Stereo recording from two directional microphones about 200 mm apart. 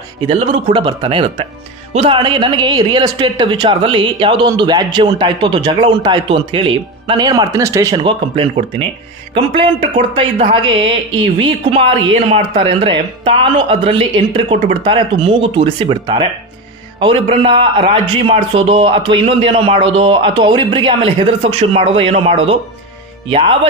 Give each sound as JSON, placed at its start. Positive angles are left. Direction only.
{"t": 0.3, "sound": "speech", "side_deg": -25}